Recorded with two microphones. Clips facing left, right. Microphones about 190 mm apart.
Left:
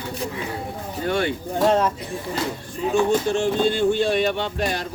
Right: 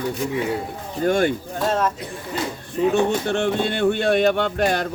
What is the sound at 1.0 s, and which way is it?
Speech, 45° right (ahead or behind).